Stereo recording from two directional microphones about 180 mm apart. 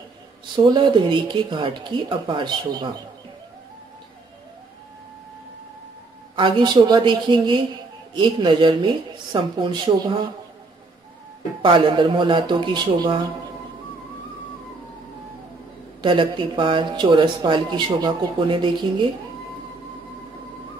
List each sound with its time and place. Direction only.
0.6 s speech: 25° right (ahead or behind)
6.3 s speech: 25° right (ahead or behind)
11.6 s speech: 25° right (ahead or behind)
16.0 s speech: 25° right (ahead or behind)